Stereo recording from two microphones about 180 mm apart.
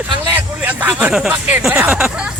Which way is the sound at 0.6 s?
10° right (ahead or behind).